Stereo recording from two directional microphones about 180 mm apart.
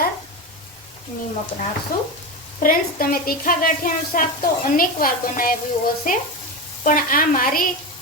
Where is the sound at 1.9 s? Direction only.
55° left (ahead or behind).